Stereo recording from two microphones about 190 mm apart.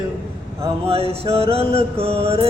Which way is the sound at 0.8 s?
30° right (ahead or behind).